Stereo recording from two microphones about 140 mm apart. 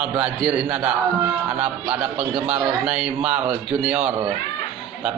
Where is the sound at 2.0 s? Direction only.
5° right (ahead or behind).